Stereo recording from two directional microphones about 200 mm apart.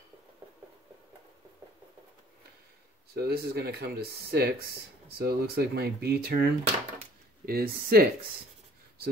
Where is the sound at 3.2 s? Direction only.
50° right (ahead or behind).